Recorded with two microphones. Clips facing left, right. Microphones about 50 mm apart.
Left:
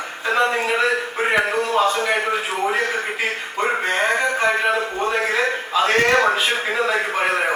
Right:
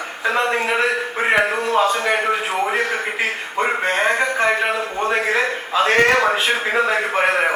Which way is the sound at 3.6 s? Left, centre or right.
Right.